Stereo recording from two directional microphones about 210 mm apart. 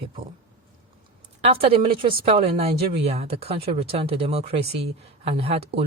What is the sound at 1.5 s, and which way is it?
Speech, 25° right (ahead or behind).